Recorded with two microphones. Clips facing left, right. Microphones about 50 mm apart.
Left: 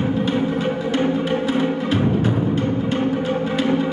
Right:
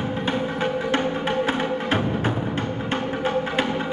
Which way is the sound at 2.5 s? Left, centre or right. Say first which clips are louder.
Left 5 dB; right.